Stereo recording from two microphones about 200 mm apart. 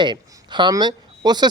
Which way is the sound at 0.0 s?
25° right (ahead or behind).